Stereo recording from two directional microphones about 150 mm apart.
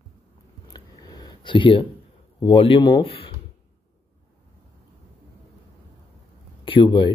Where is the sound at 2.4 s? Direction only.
35° left (ahead or behind).